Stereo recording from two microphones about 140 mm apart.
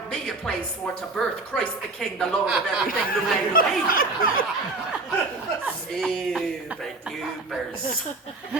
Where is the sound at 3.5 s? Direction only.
85° left.